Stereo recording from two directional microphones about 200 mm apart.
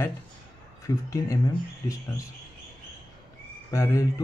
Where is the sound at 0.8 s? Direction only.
15° left (ahead or behind).